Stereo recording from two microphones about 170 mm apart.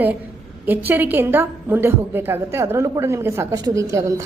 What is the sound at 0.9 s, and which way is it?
A woman's voice, 10° right (ahead or behind).